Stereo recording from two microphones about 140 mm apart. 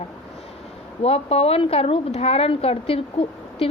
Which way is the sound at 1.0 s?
45° left (ahead or behind).